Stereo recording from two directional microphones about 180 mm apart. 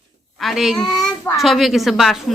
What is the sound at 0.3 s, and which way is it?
A woman's voice, centre (ahead or behind).